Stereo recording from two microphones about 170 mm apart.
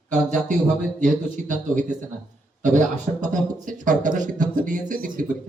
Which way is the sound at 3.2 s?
50° right (ahead or behind).